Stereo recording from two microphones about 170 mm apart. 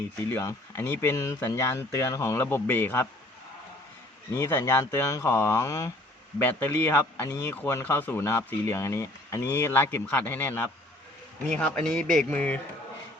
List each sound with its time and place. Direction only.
0.3 s speech: 15° left (ahead or behind)
4.4 s speech: 15° left (ahead or behind)